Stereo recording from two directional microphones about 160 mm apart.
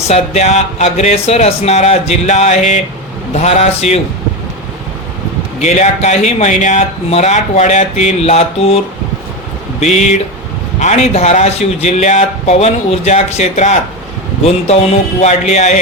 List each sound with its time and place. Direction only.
0.1 s a man's voice: 45° left (ahead or behind)
5.5 s a man's voice: 45° left (ahead or behind)
9.8 s a man's voice: 45° left (ahead or behind)
15.2 s a man's voice: 45° left (ahead or behind)